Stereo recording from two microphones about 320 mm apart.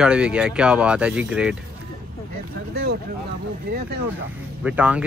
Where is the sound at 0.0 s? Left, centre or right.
Centre.